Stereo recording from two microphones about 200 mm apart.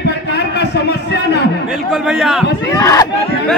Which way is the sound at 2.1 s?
5° right (ahead or behind).